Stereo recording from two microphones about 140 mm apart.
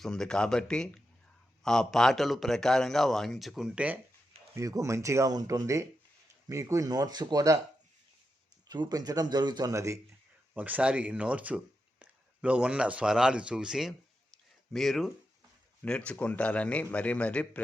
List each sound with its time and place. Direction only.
0.0 s a man's voice: 5° left (ahead or behind)
4.5 s speech: 20° right (ahead or behind)
8.6 s speech: 30° right (ahead or behind)
10.5 s a man's voice: 10° right (ahead or behind); by 17.6 s 10° left (ahead or behind)